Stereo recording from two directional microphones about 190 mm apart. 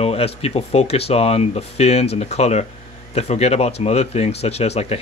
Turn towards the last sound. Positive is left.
turn(degrees=35)  # may be behind; listen again after turning